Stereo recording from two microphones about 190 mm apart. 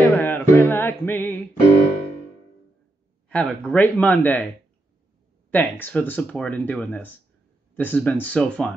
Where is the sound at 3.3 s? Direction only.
5° left (ahead or behind).